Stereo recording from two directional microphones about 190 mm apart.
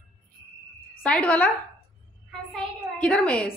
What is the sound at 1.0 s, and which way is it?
A woman's voice, 5° left (ahead or behind).